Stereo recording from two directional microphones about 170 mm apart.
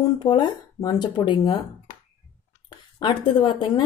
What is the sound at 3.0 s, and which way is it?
Speech, 25° left (ahead or behind).